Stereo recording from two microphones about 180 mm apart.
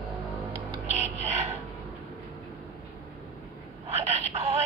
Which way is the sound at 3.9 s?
35° right (ahead or behind).